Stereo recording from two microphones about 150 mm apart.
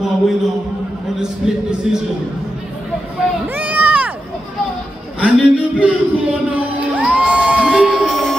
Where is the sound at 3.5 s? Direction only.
10° right (ahead or behind).